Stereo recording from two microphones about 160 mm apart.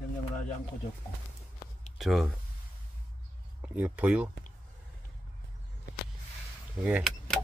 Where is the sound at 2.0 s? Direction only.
Centre (ahead or behind).